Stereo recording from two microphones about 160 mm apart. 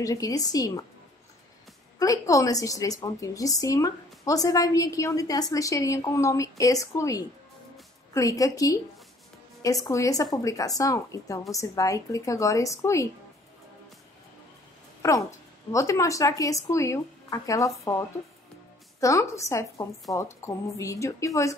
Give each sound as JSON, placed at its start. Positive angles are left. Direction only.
{"t": 0.0, "sound": "a woman's voice", "side_deg": 20}
{"t": 2.0, "sound": "a woman's voice", "side_deg": 20}
{"t": 9.8, "sound": "a woman's voice", "side_deg": 20}
{"t": 15.0, "sound": "a sound", "side_deg": 20}
{"t": 15.7, "sound": "a woman's voice", "side_deg": 20}